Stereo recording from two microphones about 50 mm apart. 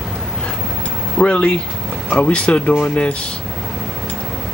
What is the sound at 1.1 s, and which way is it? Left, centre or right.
Speech, left.